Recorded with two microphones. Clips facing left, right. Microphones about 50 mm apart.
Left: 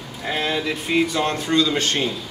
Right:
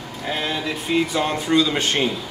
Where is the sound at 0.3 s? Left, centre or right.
Centre.